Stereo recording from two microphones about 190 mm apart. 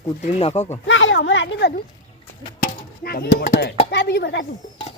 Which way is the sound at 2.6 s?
50° left (ahead or behind).